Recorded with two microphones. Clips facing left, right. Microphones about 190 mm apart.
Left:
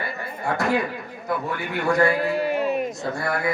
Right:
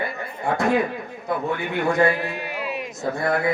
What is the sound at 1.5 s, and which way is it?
Speech, 20° right (ahead or behind).